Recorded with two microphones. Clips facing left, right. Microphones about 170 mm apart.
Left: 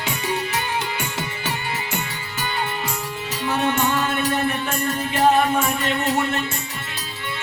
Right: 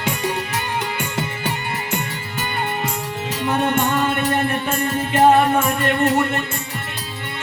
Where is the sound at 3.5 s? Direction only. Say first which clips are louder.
Right 2 dB; 55° right (ahead or behind).